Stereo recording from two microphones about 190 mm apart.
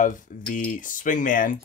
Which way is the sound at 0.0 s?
45° left (ahead or behind).